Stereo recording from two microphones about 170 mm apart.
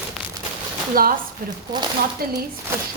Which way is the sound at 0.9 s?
60° right (ahead or behind).